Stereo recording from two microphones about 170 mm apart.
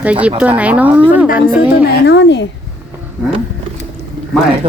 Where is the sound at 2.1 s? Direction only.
90° left.